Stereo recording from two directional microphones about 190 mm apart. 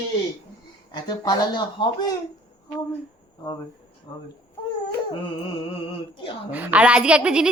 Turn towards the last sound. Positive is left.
turn(degrees=-5)  # may be behind; listen again after turning